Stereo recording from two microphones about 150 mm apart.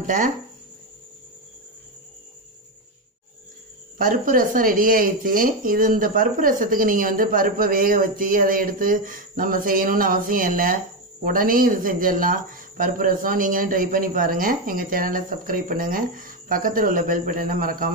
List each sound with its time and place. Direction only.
0.0 s speech: 60° right (ahead or behind)
4.0 s speech: 65° right (ahead or behind)